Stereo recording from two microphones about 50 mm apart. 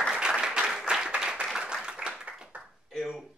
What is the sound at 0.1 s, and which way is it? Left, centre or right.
Applause, centre.